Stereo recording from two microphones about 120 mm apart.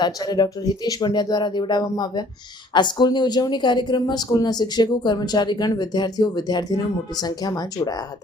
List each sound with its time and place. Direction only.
0.0 s speech: 35° left (ahead or behind)